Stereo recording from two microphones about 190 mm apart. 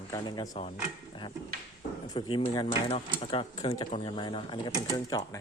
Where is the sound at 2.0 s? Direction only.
20° left (ahead or behind).